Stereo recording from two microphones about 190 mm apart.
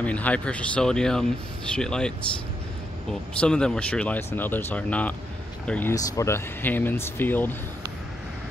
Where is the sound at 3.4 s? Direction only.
5° left (ahead or behind).